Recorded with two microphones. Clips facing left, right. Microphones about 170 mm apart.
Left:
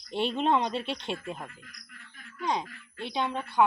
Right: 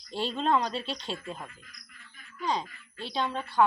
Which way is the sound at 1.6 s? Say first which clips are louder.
Left 4 dB; 65° left (ahead or behind).